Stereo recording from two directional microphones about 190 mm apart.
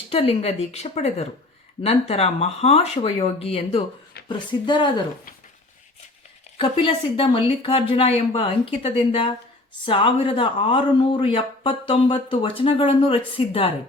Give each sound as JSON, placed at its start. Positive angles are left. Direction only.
{"t": 0.1, "sound": "speech", "side_deg": 35}
{"t": 6.6, "sound": "speech", "side_deg": 30}